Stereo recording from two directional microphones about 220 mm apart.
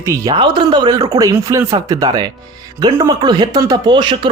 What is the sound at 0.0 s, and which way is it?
Speech, 15° right (ahead or behind).